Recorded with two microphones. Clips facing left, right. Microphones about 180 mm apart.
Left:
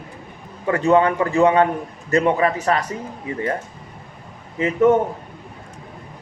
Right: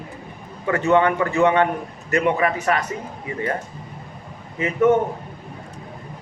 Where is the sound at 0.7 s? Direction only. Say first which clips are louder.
Left 1 dB; 35° left (ahead or behind).